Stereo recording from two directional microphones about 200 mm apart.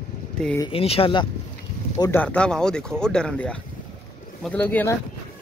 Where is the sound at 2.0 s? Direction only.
10° left (ahead or behind).